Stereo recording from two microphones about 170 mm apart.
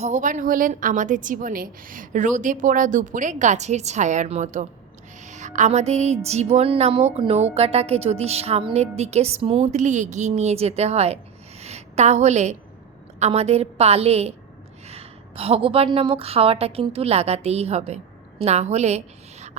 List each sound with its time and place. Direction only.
0.0 s a woman's voice: 45° right (ahead or behind)
11.6 s a sound: 40° right (ahead or behind)
13.1 s a woman's voice: 40° right (ahead or behind)